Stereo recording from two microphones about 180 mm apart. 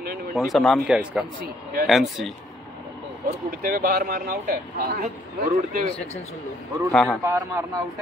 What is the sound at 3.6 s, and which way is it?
Speech, 55° right (ahead or behind).